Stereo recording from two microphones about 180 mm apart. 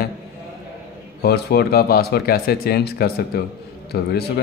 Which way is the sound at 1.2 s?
60° left (ahead or behind).